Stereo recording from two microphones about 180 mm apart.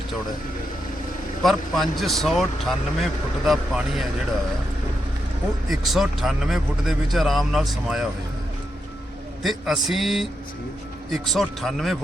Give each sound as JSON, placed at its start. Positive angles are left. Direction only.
{"t": 1.4, "sound": "speech", "side_deg": 0}
{"t": 5.6, "sound": "speech", "side_deg": 0}
{"t": 9.4, "sound": "speech", "side_deg": 0}